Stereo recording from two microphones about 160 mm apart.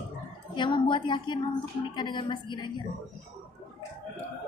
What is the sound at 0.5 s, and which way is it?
A woman's voice, 30° left (ahead or behind).